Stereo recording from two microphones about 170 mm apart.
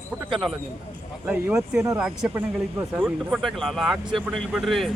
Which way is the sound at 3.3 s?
Centre (ahead or behind).